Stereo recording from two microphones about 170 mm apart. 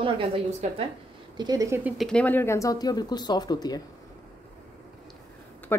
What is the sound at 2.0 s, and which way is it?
Speech, 5° left (ahead or behind).